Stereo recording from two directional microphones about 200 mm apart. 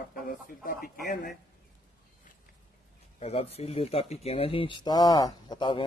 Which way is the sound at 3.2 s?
30° left (ahead or behind).